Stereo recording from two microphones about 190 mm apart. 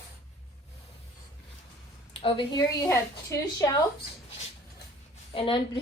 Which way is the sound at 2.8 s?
15° left (ahead or behind).